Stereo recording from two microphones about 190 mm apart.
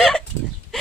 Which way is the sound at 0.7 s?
Centre (ahead or behind).